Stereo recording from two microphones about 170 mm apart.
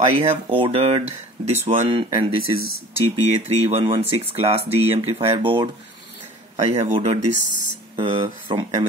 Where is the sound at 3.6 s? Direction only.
30° right (ahead or behind).